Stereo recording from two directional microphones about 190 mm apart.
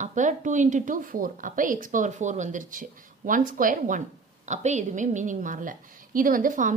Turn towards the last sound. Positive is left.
turn(degrees=-45)  # may be behind; listen again after turning